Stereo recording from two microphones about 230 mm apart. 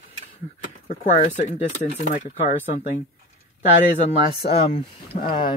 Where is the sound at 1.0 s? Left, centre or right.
Left.